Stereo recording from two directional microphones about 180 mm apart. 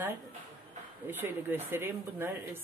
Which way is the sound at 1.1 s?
10° right (ahead or behind).